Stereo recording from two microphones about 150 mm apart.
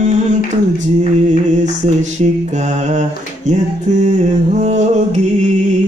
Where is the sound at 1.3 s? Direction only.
50° right (ahead or behind).